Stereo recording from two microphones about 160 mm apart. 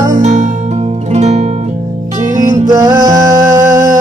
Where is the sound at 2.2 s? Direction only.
20° right (ahead or behind).